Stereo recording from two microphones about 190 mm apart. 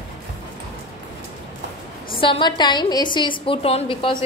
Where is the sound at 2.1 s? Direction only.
25° left (ahead or behind).